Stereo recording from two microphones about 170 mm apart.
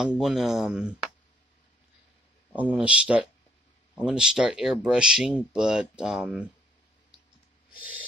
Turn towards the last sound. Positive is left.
turn(degrees=-5)  # may be behind; listen again after turning